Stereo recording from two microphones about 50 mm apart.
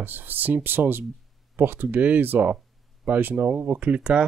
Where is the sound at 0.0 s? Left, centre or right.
Right.